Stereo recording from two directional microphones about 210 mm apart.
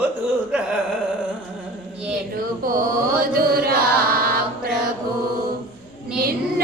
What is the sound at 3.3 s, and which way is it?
Chant, 45° right (ahead or behind).